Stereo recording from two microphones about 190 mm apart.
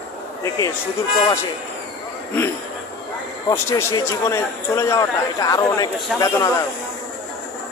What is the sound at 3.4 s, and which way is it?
A man's voice, 15° left (ahead or behind).